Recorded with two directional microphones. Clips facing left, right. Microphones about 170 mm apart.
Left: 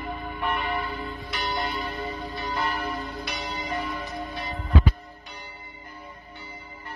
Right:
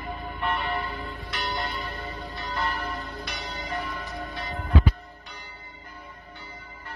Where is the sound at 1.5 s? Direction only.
20° left (ahead or behind).